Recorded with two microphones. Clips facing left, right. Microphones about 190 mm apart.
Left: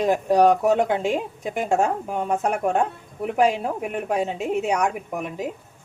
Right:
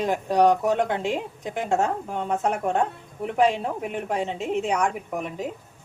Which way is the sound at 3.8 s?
15° left (ahead or behind).